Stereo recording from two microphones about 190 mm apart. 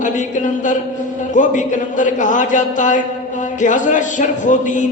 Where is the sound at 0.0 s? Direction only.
40° left (ahead or behind).